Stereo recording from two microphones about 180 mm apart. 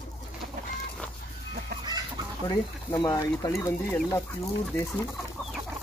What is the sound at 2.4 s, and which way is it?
Speech, 20° left (ahead or behind).